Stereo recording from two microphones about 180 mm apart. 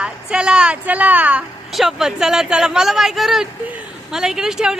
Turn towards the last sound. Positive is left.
turn(degrees=-5)  # may be behind; listen again after turning